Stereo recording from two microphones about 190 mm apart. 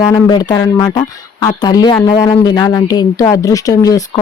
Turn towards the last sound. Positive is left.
turn(degrees=20)  # may be behind; listen again after turning